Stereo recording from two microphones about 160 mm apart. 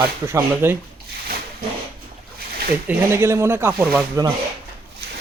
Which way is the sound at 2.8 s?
15° right (ahead or behind).